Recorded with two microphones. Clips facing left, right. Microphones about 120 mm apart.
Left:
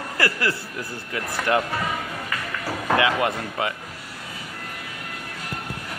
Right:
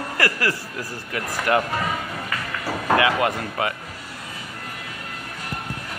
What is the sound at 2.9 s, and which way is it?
Speech, 30° right (ahead or behind).